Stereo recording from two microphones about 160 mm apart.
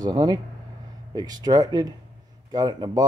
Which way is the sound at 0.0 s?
25° right (ahead or behind).